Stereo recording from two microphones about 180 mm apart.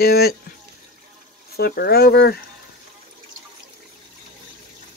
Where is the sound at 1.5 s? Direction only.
60° left (ahead or behind).